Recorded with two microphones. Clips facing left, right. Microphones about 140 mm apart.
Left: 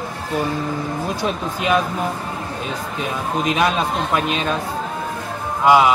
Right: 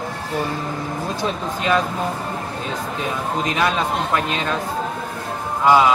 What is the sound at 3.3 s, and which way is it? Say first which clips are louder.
Speech: left 3 dB; 20° left (ahead or behind).